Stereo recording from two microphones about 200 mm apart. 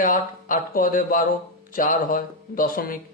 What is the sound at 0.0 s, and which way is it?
Speech, 45° left (ahead or behind).